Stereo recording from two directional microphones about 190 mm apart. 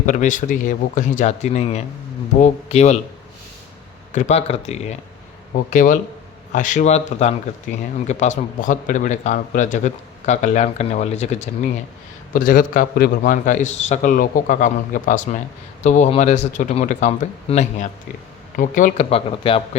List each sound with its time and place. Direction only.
0.0 s a man's voice: 40° left (ahead or behind)
4.1 s a man's voice: 35° left (ahead or behind)